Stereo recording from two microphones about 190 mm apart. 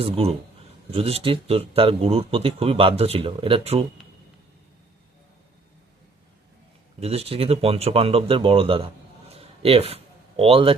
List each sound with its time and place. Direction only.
0.0 s speech: 30° right (ahead or behind)
7.0 s speech: 30° right (ahead or behind)